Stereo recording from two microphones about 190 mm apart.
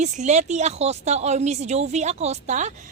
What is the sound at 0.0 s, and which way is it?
Speech, 35° right (ahead or behind).